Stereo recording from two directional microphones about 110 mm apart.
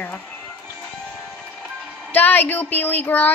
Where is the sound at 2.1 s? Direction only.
15° left (ahead or behind).